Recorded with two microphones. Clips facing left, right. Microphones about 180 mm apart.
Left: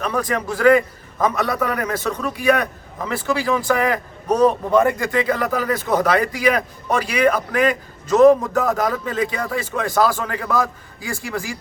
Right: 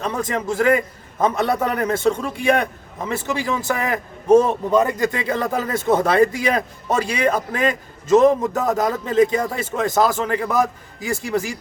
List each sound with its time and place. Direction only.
0.0 s a man's voice: 25° right (ahead or behind)